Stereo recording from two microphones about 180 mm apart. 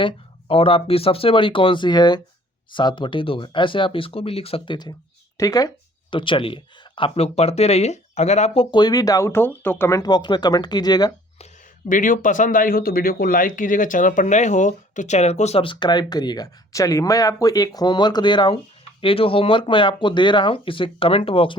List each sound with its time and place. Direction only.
0.0 s speech: 30° left (ahead or behind)
8.7 s speech: 20° left (ahead or behind)
11.9 s speech: 50° left (ahead or behind); by 21.5 s 30° left (ahead or behind)